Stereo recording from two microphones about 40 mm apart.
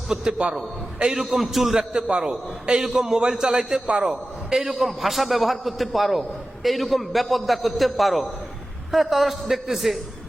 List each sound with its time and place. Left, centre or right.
0.1 s a man's voice: right; by 1.9 s centre
2.0 s a man's voice: right; by 10.0 s centre